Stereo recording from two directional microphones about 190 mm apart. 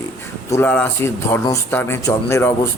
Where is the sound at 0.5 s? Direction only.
10° left (ahead or behind).